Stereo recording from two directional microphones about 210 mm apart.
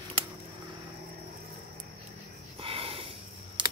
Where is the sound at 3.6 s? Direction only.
20° right (ahead or behind).